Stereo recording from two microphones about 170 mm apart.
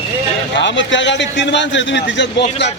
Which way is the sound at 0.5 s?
90° left.